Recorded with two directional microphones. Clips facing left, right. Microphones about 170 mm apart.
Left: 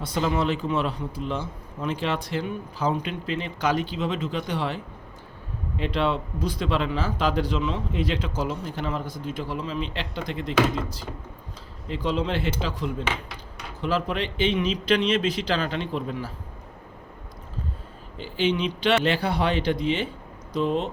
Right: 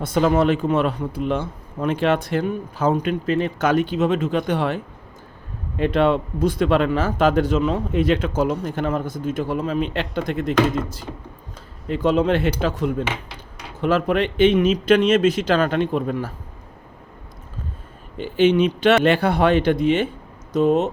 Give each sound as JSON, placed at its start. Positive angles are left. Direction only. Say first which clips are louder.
{"t": 0.0, "sound": "speech", "louder": "right 7 dB", "side_deg": -50}
{"t": 11.9, "sound": "speech", "louder": "right 8 dB", "side_deg": -50}
{"t": 18.2, "sound": "speech", "louder": "right 8 dB", "side_deg": -55}